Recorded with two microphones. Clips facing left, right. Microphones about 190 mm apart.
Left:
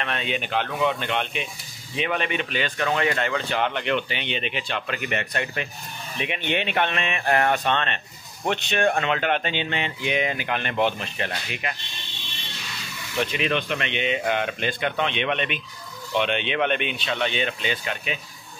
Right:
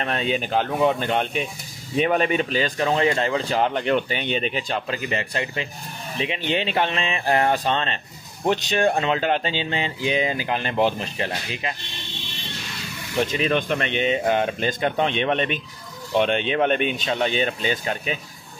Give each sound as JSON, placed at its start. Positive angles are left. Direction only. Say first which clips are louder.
{"t": 0.0, "sound": "speech", "louder": "right 4 dB", "side_deg": -35}
{"t": 13.2, "sound": "speech", "louder": "right 3 dB", "side_deg": -40}